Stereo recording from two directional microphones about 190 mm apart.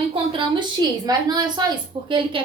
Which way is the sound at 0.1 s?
25° right (ahead or behind).